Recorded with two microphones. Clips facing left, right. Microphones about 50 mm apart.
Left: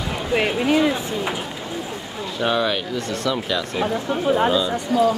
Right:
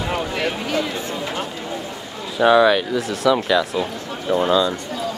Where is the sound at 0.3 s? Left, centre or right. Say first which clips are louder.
Left 4 dB; left.